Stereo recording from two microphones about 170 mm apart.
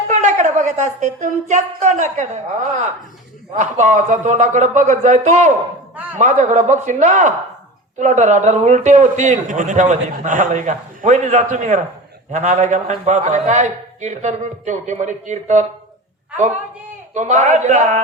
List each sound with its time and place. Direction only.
0.1 s a man's voice: 45° right (ahead or behind)
17.2 s a man's voice: 45° right (ahead or behind)